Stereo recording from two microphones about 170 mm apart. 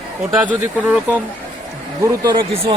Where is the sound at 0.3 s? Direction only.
10° right (ahead or behind).